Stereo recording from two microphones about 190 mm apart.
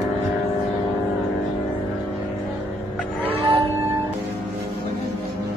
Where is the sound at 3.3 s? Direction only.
30° right (ahead or behind).